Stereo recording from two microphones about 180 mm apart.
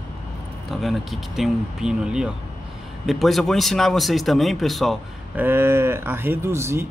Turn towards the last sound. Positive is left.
turn(degrees=-15)  # may be behind; listen again after turning